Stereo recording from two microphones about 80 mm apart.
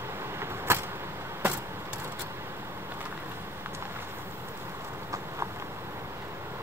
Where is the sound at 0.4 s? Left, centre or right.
Right.